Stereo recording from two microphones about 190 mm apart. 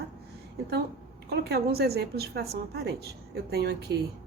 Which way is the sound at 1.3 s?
60° right (ahead or behind).